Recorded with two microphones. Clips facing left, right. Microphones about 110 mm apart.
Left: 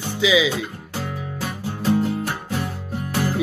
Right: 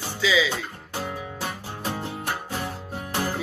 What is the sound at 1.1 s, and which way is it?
Music, 20° right (ahead or behind).